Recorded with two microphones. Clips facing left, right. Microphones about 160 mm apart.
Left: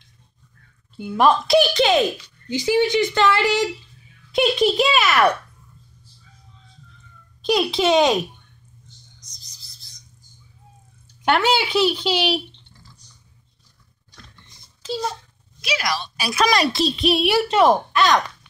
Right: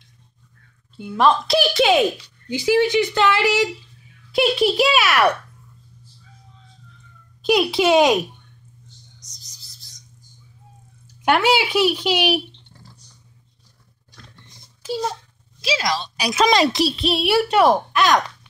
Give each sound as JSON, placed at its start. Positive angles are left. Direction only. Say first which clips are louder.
{"t": 0.9, "sound": "a woman's voice", "louder": "even", "side_deg": 10}
{"t": 1.7, "sound": "a woman's voice", "louder": "right 1 dB", "side_deg": -10}
{"t": 7.4, "sound": "speech", "louder": "right 2 dB", "side_deg": -10}
{"t": 11.2, "sound": "speech", "louder": "right 1 dB", "side_deg": -10}
{"t": 14.8, "sound": "a child's voice", "louder": "right 1 dB", "side_deg": -15}
{"t": 15.6, "sound": "a woman's voice", "louder": "right 2 dB", "side_deg": -25}
{"t": 16.9, "sound": "a woman's voice", "louder": "even", "side_deg": 0}